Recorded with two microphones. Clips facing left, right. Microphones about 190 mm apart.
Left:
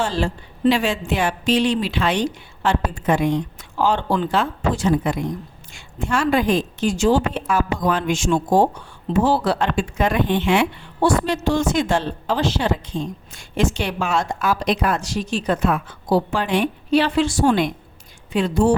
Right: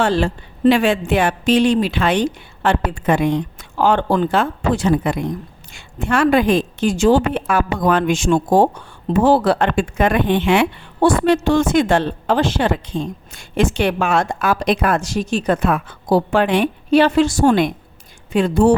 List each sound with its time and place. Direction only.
0.0 s speech: 60° right (ahead or behind)